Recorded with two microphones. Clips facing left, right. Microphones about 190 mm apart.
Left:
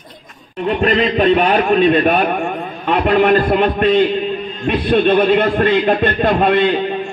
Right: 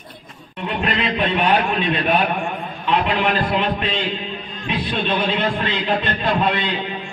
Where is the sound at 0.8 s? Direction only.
45° left (ahead or behind).